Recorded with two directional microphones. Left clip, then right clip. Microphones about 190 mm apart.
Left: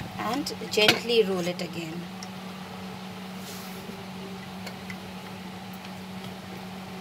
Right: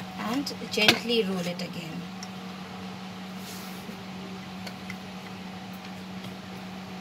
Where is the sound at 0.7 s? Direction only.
60° left (ahead or behind).